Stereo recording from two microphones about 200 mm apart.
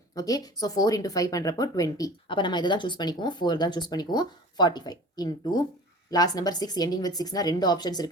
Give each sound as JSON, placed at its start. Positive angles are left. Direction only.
{"t": 0.1, "sound": "a woman's voice", "side_deg": 20}